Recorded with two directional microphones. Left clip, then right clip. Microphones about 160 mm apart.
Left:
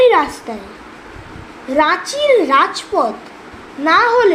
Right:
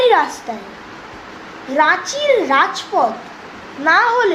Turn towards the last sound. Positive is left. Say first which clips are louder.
# left 2 dB
turn(degrees=40)  # may be behind; listen again after turning